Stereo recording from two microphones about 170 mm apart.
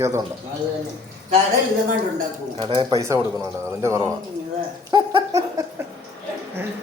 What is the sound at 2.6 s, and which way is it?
Speech, 30° right (ahead or behind).